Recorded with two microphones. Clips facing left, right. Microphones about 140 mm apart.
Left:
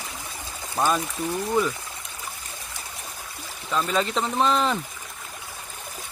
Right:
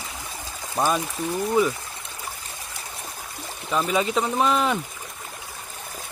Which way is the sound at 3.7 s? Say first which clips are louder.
Right 2 dB; 10° right (ahead or behind).